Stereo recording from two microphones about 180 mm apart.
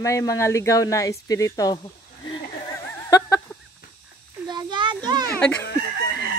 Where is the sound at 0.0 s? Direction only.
15° left (ahead or behind).